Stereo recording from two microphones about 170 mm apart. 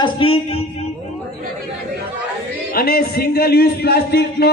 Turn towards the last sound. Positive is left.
turn(degrees=70)  # may be behind; listen again after turning